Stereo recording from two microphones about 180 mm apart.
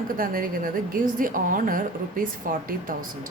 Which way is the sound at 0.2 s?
50° right (ahead or behind).